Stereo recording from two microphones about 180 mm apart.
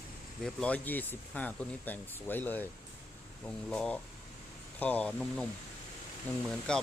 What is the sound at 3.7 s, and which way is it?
Speech, 5° left (ahead or behind).